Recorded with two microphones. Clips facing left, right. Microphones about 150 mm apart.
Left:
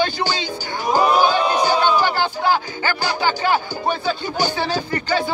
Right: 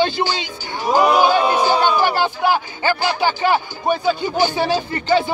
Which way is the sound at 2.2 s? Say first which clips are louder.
Right 1 dB; 20° right (ahead or behind).